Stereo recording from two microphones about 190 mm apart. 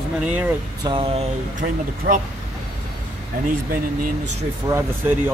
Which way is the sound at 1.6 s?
45° right (ahead or behind).